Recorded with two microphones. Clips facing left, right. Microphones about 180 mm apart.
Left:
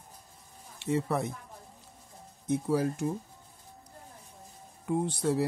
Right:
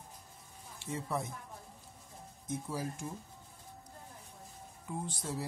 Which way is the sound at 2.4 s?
65° left (ahead or behind).